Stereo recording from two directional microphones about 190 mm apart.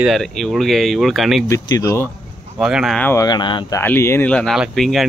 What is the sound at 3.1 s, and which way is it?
Speech, 20° left (ahead or behind).